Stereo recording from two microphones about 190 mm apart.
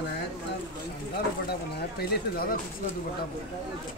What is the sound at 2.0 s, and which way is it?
Speech, 55° left (ahead or behind).